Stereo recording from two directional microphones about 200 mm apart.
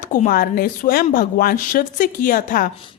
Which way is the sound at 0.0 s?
40° left (ahead or behind).